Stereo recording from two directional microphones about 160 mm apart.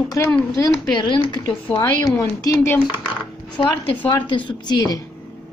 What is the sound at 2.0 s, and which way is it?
Speech, 20° left (ahead or behind).